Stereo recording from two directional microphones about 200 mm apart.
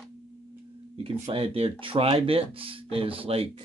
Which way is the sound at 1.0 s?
30° right (ahead or behind).